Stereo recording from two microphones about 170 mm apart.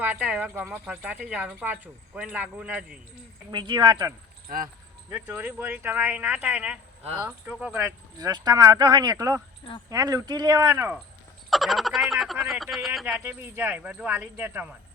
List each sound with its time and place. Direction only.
0.0 s speech: 10° right (ahead or behind)
3.5 s speech: 25° right (ahead or behind)
4.4 s speech: 55° right (ahead or behind)
5.1 s speech: 10° right (ahead or behind)
11.5 s frog: centre (ahead or behind)
12.7 s speech: centre (ahead or behind)
13.1 s speech: 15° right (ahead or behind)